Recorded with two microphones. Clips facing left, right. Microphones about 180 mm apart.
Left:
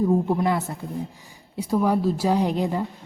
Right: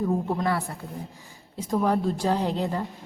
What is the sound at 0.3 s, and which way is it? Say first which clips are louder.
A woman's voice: left 4 dB; 15° left (ahead or behind).